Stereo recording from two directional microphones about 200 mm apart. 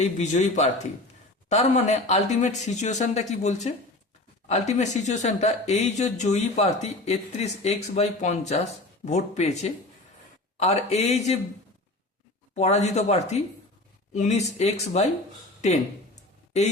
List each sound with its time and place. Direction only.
0.0 s speech: 35° left (ahead or behind)
12.5 s speech: 35° left (ahead or behind)
15.6 s a sound: 35° left (ahead or behind)